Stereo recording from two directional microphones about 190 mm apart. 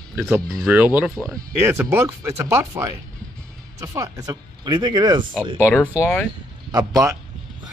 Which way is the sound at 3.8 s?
15° right (ahead or behind).